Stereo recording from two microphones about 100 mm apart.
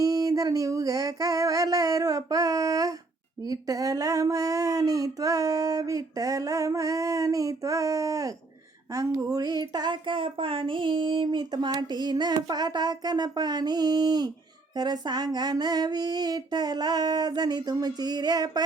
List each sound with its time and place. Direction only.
0.0 s speech: 35° right (ahead or behind)